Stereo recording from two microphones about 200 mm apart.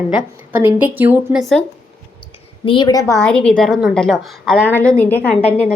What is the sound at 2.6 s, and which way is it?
Speech, 20° left (ahead or behind).